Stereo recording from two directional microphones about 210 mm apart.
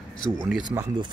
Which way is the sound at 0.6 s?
20° right (ahead or behind).